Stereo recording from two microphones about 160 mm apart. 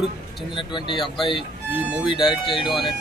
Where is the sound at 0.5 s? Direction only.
30° left (ahead or behind).